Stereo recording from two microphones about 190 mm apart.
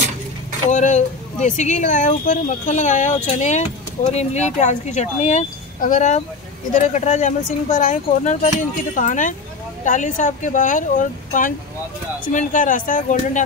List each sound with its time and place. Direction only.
0.7 s speech: 40° left (ahead or behind)